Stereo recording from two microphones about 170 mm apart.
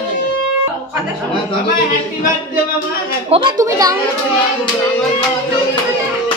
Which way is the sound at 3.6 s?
20° right (ahead or behind).